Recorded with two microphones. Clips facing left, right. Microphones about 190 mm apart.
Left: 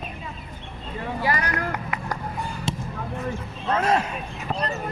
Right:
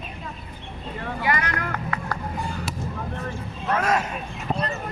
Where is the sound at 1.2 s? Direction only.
35° left (ahead or behind).